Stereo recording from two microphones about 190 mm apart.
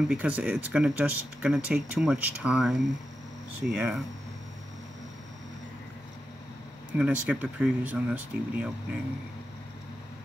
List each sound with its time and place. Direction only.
0.1 s speech: 5° right (ahead or behind)
7.0 s speech: 5° right (ahead or behind)